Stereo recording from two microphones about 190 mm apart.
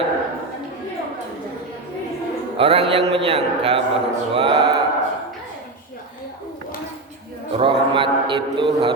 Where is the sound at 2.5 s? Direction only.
30° right (ahead or behind).